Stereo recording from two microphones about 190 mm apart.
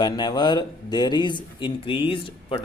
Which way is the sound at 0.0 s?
20° left (ahead or behind).